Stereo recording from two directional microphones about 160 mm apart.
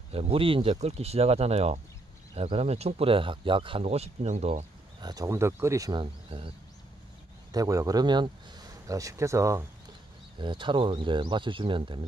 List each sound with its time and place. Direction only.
0.1 s speech: 35° right (ahead or behind)
5.0 s speech: 20° right (ahead or behind)
7.5 s speech: 20° right (ahead or behind)
10.4 s speech: 30° right (ahead or behind)